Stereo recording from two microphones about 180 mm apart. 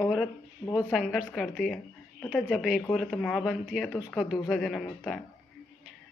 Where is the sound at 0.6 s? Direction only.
25° left (ahead or behind).